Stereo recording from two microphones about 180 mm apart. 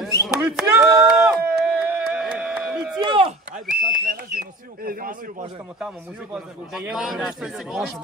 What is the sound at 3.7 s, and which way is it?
Speech, 50° right (ahead or behind).